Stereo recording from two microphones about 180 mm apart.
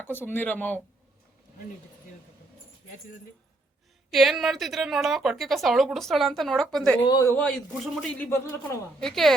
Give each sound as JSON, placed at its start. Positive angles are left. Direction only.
{"t": 0.0, "sound": "speech", "side_deg": 10}
{"t": 4.1, "sound": "a woman's voice", "side_deg": 0}
{"t": 7.1, "sound": "speech", "side_deg": 20}
{"t": 7.3, "sound": "a woman's voice", "side_deg": 5}
{"t": 9.0, "sound": "a woman's voice", "side_deg": 0}